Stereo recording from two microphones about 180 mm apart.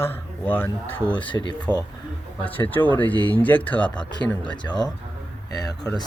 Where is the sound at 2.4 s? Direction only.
10° left (ahead or behind).